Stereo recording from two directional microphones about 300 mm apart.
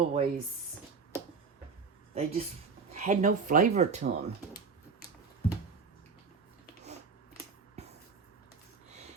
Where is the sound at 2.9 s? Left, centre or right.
Right.